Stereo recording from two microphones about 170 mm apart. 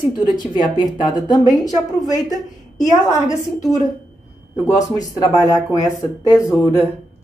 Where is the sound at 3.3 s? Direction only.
20° left (ahead or behind).